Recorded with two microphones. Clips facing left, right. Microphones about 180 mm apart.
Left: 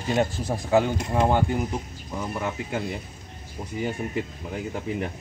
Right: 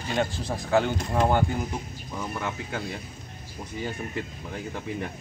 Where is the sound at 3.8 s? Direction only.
10° left (ahead or behind).